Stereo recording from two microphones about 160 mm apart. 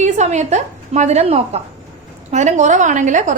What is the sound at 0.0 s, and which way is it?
A woman's voice, 45° right (ahead or behind).